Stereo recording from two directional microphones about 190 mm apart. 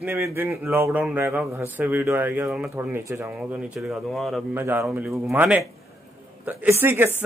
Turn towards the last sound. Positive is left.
turn(degrees=-10)  # may be behind; listen again after turning